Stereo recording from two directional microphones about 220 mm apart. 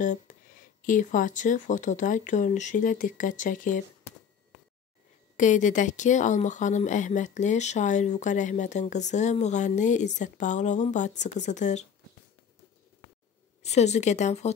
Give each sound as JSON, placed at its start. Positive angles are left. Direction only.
{"t": 0.0, "sound": "speech", "side_deg": 35}
{"t": 5.4, "sound": "speech", "side_deg": 35}
{"t": 13.6, "sound": "speech", "side_deg": 30}